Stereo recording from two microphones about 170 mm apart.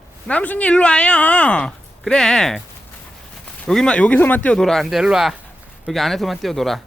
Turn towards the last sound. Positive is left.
turn(degrees=0)  # may be behind; listen again after turning